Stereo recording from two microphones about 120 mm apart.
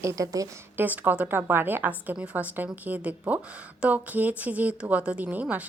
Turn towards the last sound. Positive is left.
turn(degrees=-15)  # may be behind; listen again after turning